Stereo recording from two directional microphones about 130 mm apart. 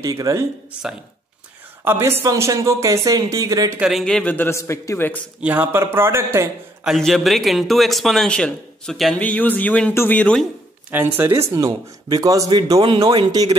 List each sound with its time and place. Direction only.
0.0 s speech: 25° right (ahead or behind)
1.9 s speech: 15° right (ahead or behind)
3.8 s a man's voice: centre (ahead or behind)
5.4 s speech: 15° right (ahead or behind)
6.8 s a man's voice: centre (ahead or behind)
10.9 s speech: 15° right (ahead or behind)